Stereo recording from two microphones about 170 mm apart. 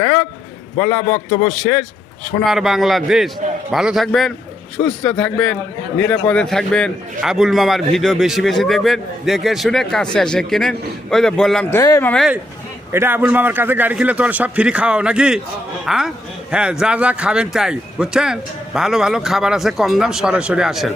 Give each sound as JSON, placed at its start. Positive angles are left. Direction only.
{"t": 0.0, "sound": "a sound", "side_deg": 15}
{"t": 0.8, "sound": "a man's voice", "side_deg": 10}
{"t": 11.7, "sound": "a man's voice", "side_deg": 15}
{"t": 12.9, "sound": "a man's voice", "side_deg": -15}